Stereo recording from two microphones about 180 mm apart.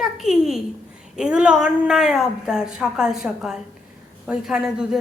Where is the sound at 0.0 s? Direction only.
Centre (ahead or behind).